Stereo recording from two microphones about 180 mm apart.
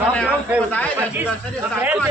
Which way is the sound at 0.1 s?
10° left (ahead or behind).